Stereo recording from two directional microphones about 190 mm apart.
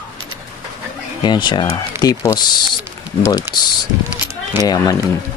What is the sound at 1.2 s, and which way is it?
Speech, 25° left (ahead or behind).